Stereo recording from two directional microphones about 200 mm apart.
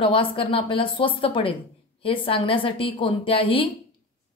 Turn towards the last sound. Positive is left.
turn(degrees=25)  # may be behind; listen again after turning